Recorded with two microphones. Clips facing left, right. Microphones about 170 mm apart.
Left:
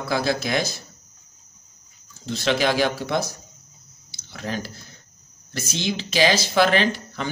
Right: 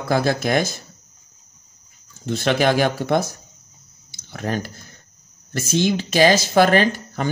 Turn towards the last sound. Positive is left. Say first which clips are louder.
# right 4 dB
turn(degrees=-45)  # may be behind; listen again after turning